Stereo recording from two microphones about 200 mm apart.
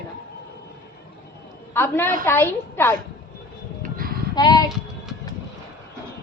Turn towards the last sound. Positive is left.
turn(degrees=20)  # may be behind; listen again after turning